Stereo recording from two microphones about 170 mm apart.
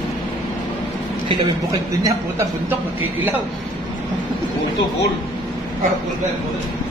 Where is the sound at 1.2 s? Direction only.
20° right (ahead or behind).